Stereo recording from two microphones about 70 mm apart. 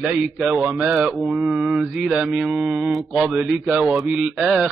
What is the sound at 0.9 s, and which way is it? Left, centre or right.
Mantra, centre.